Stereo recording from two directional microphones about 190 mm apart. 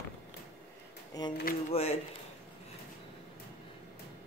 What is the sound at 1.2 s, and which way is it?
Speech, 20° left (ahead or behind).